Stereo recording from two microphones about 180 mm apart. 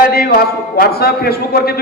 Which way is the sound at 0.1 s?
60° left (ahead or behind).